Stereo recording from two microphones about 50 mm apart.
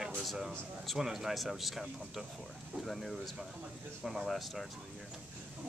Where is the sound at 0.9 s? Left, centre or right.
Centre.